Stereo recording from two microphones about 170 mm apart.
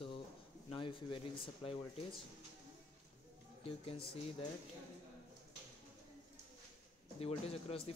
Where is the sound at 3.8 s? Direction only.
35° left (ahead or behind).